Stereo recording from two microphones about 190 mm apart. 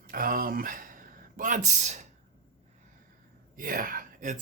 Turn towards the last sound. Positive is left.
turn(degrees=-45)  # may be behind; listen again after turning